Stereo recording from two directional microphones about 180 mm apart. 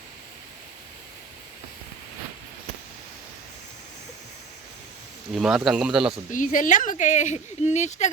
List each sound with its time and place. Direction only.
5.3 s speech: 5° right (ahead or behind)
6.3 s speech: 45° left (ahead or behind)